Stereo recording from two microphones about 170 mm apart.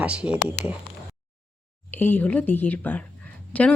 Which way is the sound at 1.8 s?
10° left (ahead or behind).